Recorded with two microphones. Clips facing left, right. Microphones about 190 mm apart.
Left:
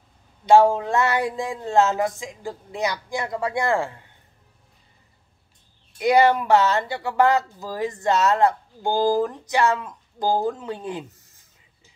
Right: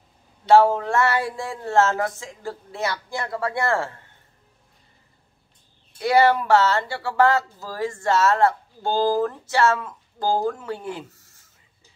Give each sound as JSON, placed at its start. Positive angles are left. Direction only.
{"t": 0.5, "sound": "speech", "side_deg": 15}
{"t": 5.9, "sound": "speech", "side_deg": 20}